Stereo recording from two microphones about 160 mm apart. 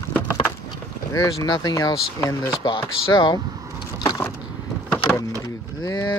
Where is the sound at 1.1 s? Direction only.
20° left (ahead or behind).